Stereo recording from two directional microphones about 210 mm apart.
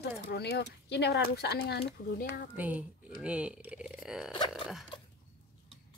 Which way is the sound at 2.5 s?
10° right (ahead or behind).